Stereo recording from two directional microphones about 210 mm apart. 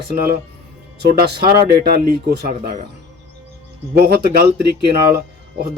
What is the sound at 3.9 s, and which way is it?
Speech, 50° right (ahead or behind).